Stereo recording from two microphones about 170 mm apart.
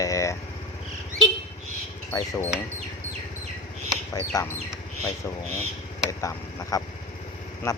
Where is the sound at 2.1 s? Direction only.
20° left (ahead or behind).